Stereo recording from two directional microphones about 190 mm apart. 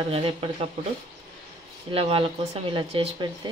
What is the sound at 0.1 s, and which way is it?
Speech, 30° right (ahead or behind).